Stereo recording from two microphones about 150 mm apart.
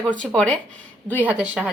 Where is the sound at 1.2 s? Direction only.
10° right (ahead or behind).